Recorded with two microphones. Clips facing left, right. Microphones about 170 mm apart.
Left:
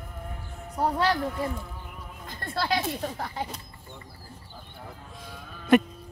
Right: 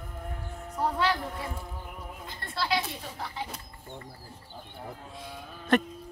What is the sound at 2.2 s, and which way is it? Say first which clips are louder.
Speech: left 4 dB; 45° left (ahead or behind).